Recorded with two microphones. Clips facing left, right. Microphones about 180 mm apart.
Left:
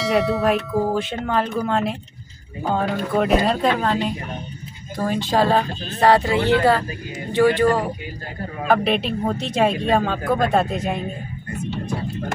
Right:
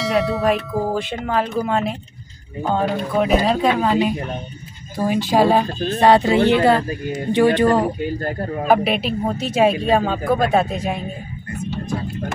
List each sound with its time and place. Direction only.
0.0 s speech: centre (ahead or behind); by 7.8 s 20° right (ahead or behind)
8.8 s speech: 5° right (ahead or behind)